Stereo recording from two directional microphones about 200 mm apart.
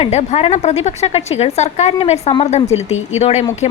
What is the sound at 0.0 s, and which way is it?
A woman's voice, 30° left (ahead or behind).